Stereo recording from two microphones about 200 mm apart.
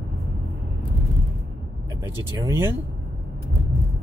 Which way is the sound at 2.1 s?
15° right (ahead or behind).